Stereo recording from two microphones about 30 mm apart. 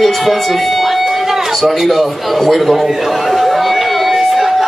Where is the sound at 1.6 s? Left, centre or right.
Centre.